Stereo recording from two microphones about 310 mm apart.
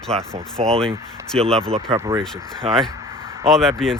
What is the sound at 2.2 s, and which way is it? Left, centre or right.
Speech, centre.